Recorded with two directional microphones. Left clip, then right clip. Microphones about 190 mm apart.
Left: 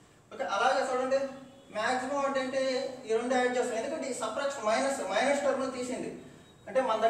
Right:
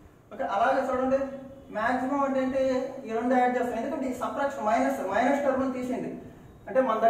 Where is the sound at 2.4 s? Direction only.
Centre (ahead or behind).